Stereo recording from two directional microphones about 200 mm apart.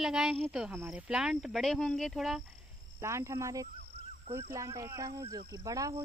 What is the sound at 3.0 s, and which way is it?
Speech, 15° right (ahead or behind).